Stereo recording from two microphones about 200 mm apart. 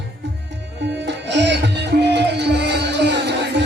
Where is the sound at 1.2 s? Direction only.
60° right (ahead or behind).